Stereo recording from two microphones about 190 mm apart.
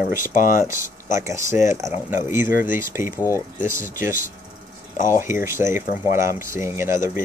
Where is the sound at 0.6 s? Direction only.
15° right (ahead or behind).